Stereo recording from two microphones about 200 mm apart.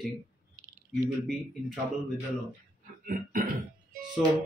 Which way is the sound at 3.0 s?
45° right (ahead or behind).